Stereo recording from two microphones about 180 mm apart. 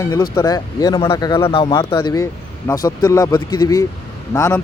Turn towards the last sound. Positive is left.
turn(degrees=15)  # may be behind; listen again after turning